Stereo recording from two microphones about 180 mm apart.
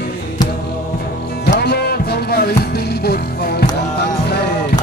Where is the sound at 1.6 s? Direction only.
65° left (ahead or behind).